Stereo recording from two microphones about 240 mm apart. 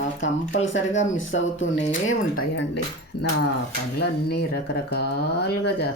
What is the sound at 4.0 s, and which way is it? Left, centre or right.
Speech, left.